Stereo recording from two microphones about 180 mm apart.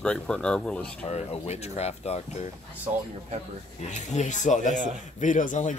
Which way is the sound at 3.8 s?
40° left (ahead or behind).